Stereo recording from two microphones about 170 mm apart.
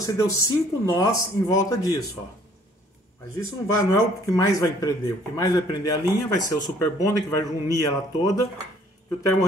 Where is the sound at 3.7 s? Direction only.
20° left (ahead or behind).